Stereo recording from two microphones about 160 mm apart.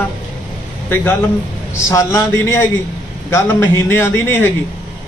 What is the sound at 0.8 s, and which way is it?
A man's voice, 15° left (ahead or behind).